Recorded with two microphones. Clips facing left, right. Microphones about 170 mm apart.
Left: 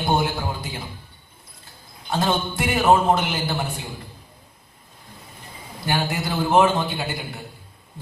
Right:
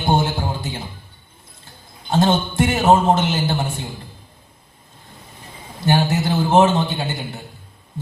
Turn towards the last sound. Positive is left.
turn(degrees=-25)  # may be behind; listen again after turning